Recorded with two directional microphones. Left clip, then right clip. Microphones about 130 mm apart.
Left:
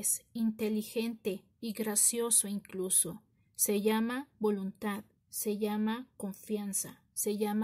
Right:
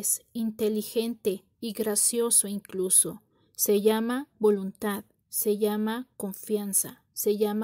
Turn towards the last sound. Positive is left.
turn(degrees=-40)  # may be behind; listen again after turning